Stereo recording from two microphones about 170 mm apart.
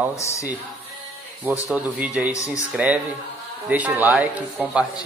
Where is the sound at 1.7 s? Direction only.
10° right (ahead or behind).